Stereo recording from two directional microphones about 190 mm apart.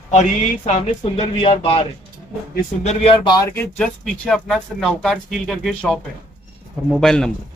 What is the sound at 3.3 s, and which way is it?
Speech, 10° left (ahead or behind).